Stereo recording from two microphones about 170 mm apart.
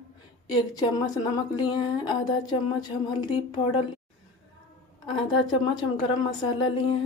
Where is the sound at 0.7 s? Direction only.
25° left (ahead or behind).